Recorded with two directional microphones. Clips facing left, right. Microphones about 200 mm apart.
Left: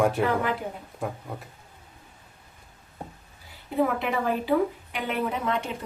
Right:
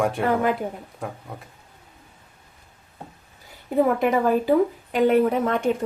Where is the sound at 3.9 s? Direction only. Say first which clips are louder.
Right 7 dB; 45° right (ahead or behind).